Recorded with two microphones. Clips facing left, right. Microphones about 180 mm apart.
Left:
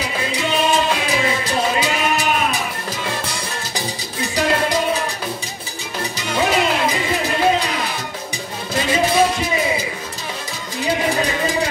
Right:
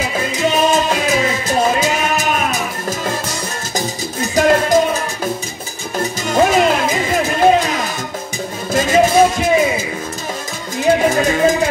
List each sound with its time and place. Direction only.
0.0 s music: 45° right (ahead or behind)